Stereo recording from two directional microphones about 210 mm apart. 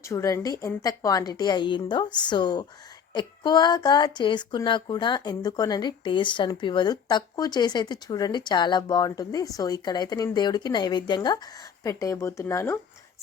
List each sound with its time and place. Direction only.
0.0 s speech: 15° left (ahead or behind)